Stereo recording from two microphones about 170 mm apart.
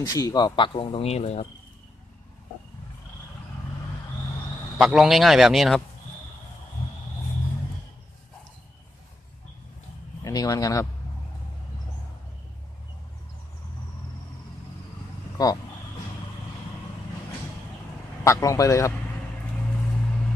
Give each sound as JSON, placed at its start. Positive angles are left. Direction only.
{"t": 0.0, "sound": "speech", "side_deg": 20}
{"t": 4.7, "sound": "a man's voice", "side_deg": 0}
{"t": 10.2, "sound": "speech", "side_deg": 20}
{"t": 18.2, "sound": "speech", "side_deg": 20}